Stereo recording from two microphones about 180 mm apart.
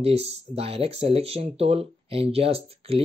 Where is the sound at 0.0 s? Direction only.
35° right (ahead or behind).